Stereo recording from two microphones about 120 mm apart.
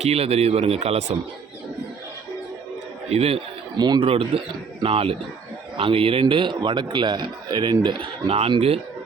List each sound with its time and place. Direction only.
0.0 s speech: 60° right (ahead or behind)
3.1 s speech: 55° right (ahead or behind)
3.8 s a man's voice: 35° right (ahead or behind)
4.0 s a man's voice: 50° right (ahead or behind)
8.3 s speech: 50° right (ahead or behind)